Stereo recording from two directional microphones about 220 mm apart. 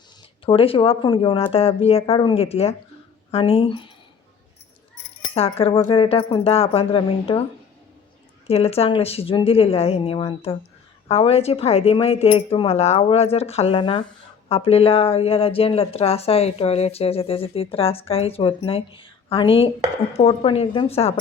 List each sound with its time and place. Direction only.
0.4 s speech: 25° left (ahead or behind)
5.3 s speech: 25° left (ahead or behind)
8.4 s speech: 25° left (ahead or behind)